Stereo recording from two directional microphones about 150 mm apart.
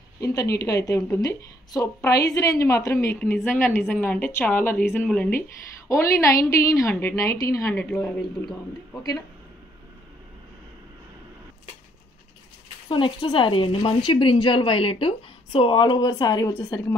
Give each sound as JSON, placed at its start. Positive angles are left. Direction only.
{"t": 0.2, "sound": "a woman's voice", "side_deg": 20}
{"t": 5.9, "sound": "a woman's voice", "side_deg": 20}
{"t": 7.7, "sound": "a woman's voice", "side_deg": 10}
{"t": 12.8, "sound": "speech", "side_deg": 35}